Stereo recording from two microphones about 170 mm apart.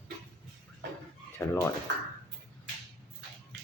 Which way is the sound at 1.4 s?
15° left (ahead or behind).